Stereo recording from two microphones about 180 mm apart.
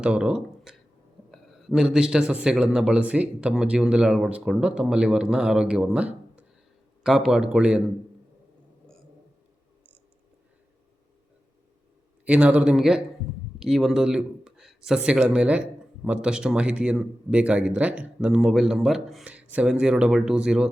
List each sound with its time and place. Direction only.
0.0 s a man's voice: 5° right (ahead or behind)
12.2 s a man's voice: 5° right (ahead or behind)